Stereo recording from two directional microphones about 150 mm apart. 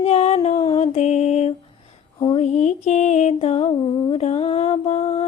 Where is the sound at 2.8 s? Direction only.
50° left (ahead or behind).